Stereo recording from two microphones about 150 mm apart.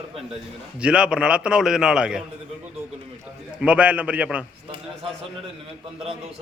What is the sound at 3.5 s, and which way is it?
Speech, 10° right (ahead or behind).